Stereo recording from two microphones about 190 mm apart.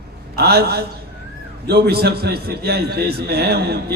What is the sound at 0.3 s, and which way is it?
A man's voice, 55° right (ahead or behind).